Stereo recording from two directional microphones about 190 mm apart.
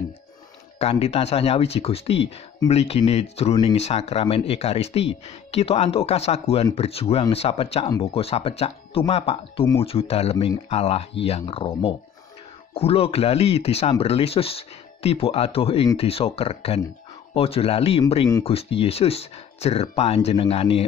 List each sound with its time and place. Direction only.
0.7 s speech: 30° left (ahead or behind)